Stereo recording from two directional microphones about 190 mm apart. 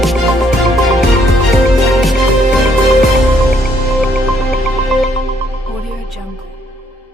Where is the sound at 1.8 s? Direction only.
Centre (ahead or behind).